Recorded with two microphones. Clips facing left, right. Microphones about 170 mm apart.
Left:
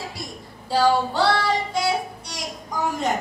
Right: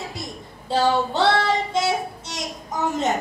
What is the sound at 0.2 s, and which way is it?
Female singing, 20° right (ahead or behind).